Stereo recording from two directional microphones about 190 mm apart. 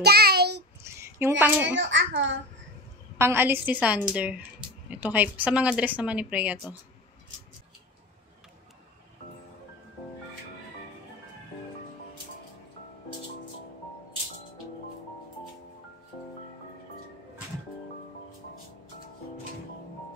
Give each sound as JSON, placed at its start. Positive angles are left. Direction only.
{"t": 0.0, "sound": "child singing", "side_deg": -55}
{"t": 0.8, "sound": "a sound", "side_deg": -15}
{"t": 1.4, "sound": "speech", "side_deg": -10}
{"t": 1.8, "sound": "a child's voice", "side_deg": -70}
{"t": 3.2, "sound": "speech", "side_deg": -10}